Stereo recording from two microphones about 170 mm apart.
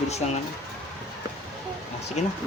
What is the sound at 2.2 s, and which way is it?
Speech, 40° left (ahead or behind).